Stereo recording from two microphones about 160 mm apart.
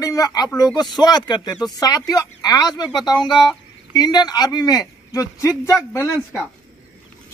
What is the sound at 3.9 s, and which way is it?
A man's voice, 25° left (ahead or behind).